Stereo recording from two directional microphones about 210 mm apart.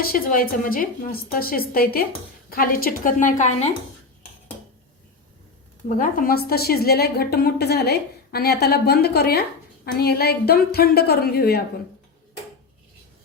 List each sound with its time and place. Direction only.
0.0 s a woman's voice: 45° left (ahead or behind)
6.0 s a woman's voice: 45° left (ahead or behind)